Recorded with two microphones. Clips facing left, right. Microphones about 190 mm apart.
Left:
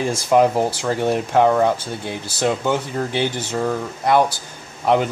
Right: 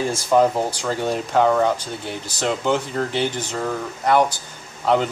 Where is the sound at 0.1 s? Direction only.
10° left (ahead or behind).